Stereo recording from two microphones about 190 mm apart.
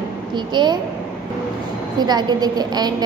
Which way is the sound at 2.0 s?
20° right (ahead or behind).